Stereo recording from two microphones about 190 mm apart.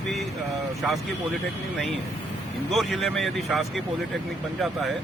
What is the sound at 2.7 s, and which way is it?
Speech, centre (ahead or behind).